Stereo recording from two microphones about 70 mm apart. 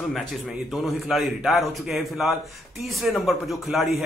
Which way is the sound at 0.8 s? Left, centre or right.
Centre.